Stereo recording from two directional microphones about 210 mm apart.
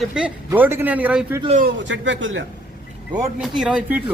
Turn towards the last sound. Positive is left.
turn(degrees=-5)  # may be behind; listen again after turning